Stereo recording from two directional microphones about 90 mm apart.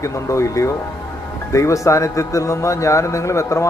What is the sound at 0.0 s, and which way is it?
A man's voice, 35° left (ahead or behind).